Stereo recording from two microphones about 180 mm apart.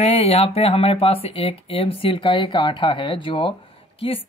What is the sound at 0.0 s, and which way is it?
Speech, 35° left (ahead or behind).